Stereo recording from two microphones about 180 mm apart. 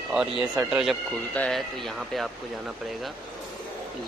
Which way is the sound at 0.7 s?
Centre (ahead or behind).